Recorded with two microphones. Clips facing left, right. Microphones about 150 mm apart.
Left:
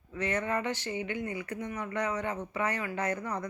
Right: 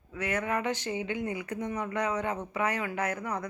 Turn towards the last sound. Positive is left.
turn(degrees=-10)  # may be behind; listen again after turning